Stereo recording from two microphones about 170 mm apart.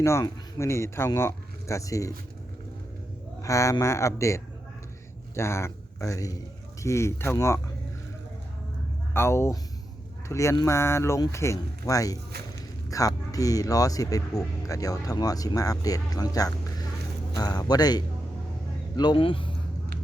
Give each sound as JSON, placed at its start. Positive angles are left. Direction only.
{"t": 0.0, "sound": "speech", "side_deg": 15}
{"t": 3.4, "sound": "speech", "side_deg": 20}
{"t": 9.1, "sound": "speech", "side_deg": 15}